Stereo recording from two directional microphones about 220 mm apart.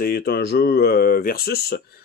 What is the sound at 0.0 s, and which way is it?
Speech, 45° left (ahead or behind).